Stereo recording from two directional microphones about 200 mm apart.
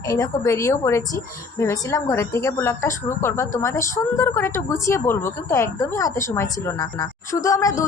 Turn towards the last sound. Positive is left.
turn(degrees=15)  # may be behind; listen again after turning